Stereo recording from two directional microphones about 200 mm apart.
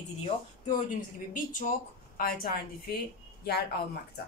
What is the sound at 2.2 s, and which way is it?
A woman's voice, 50° left (ahead or behind).